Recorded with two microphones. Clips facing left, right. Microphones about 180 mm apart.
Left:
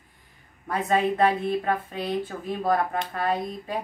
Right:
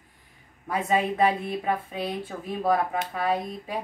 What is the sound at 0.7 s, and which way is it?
A woman's voice, 5° right (ahead or behind).